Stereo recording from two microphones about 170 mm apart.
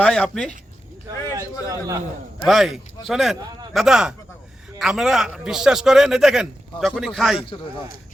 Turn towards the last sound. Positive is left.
turn(degrees=30)  # may be behind; listen again after turning